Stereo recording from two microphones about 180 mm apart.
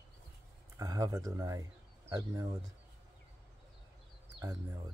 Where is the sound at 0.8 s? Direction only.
20° right (ahead or behind).